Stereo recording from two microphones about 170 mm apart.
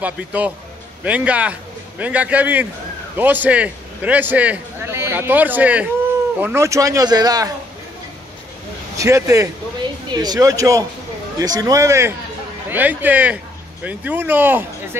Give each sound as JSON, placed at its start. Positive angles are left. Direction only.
{"t": 0.0, "sound": "a man's voice", "side_deg": -10}
{"t": 8.9, "sound": "a man's voice", "side_deg": -20}